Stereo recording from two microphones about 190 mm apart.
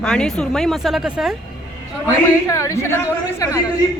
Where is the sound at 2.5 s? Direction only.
15° left (ahead or behind).